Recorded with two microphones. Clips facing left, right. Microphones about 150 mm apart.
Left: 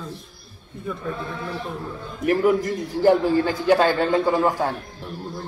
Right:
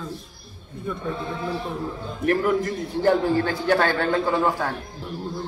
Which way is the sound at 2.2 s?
5° left (ahead or behind).